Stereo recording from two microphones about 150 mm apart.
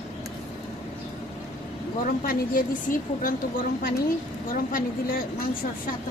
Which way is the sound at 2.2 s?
70° left (ahead or behind).